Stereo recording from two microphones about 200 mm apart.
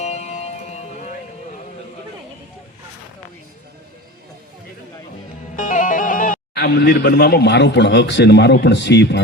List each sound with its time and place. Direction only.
0.0 s music: 35° left (ahead or behind)
5.5 s speech: 40° left (ahead or behind); by 9.2 s 60° left (ahead or behind)